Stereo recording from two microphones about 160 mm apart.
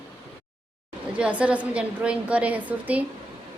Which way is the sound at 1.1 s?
10° right (ahead or behind).